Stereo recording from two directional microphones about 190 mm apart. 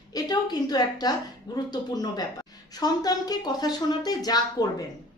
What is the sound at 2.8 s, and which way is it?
A woman's voice, 20° left (ahead or behind).